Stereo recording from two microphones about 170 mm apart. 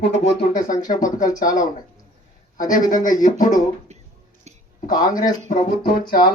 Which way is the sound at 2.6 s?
50° left (ahead or behind).